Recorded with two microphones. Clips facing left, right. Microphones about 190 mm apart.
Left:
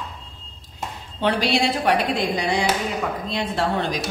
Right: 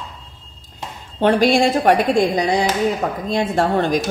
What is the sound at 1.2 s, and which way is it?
A woman's voice, 50° right (ahead or behind).